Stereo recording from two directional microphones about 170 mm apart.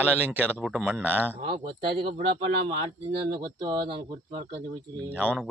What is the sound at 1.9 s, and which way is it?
Speech, 35° right (ahead or behind).